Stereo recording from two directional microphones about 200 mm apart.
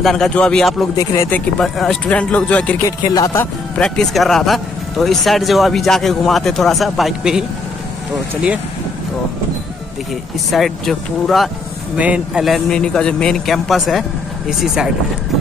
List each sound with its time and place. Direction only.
0.0 s speech: centre (ahead or behind)
0.9 s speech: 15° left (ahead or behind)
1.6 s speech: centre (ahead or behind)
10.5 s speech: centre (ahead or behind)